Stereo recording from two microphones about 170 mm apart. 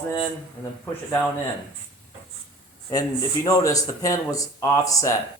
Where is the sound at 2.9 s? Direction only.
20° left (ahead or behind).